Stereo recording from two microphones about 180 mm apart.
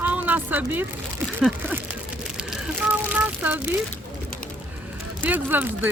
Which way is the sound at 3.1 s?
10° right (ahead or behind).